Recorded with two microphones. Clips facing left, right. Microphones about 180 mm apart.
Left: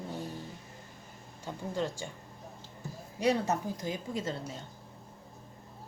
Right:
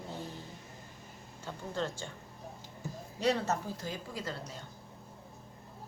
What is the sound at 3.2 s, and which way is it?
A woman's voice, 15° left (ahead or behind).